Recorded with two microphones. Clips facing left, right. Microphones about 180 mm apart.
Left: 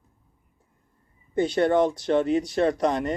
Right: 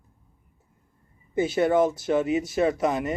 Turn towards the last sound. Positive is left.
turn(degrees=-5)  # may be behind; listen again after turning